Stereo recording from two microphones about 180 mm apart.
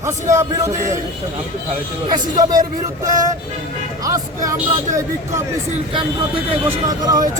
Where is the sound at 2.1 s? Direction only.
20° right (ahead or behind).